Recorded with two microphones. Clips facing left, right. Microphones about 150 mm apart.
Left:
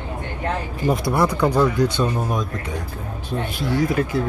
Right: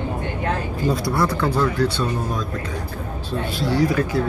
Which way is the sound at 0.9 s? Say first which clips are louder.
Left 2 dB; 20° left (ahead or behind).